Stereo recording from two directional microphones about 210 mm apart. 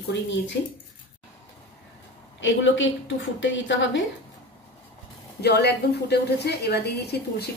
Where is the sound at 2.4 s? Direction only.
60° left (ahead or behind).